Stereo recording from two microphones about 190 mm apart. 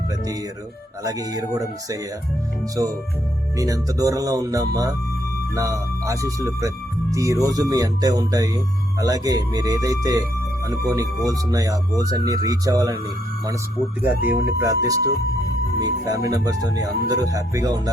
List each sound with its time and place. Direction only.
1.0 s speech: 20° right (ahead or behind)
3.6 s speech: 15° right (ahead or behind)
14.0 s speech: 10° right (ahead or behind)